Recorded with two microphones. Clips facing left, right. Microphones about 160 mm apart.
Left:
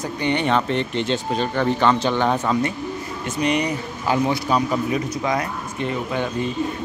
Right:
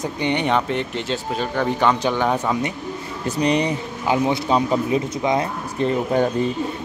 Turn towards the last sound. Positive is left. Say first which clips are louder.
# right 5 dB
turn(degrees=-35)  # may be behind; listen again after turning